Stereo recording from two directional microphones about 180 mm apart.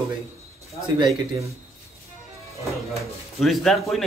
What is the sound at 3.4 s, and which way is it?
Speech, centre (ahead or behind).